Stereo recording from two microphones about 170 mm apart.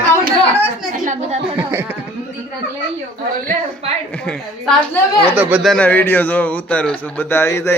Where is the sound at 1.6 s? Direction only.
10° right (ahead or behind).